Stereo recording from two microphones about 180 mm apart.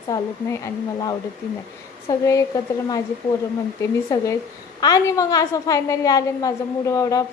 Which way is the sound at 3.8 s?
15° left (ahead or behind).